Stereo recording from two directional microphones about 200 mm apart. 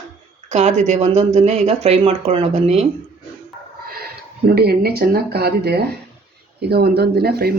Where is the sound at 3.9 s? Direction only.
50° right (ahead or behind).